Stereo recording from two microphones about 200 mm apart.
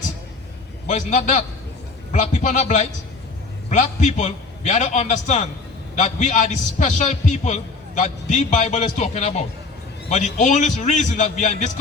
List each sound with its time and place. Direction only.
0.9 s a man's voice: 35° left (ahead or behind)